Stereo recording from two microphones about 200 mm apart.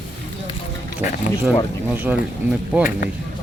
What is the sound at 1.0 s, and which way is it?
Speech, 10° right (ahead or behind).